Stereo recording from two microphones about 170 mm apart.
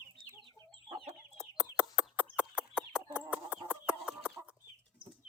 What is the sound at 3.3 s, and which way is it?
Chicken, 10° right (ahead or behind).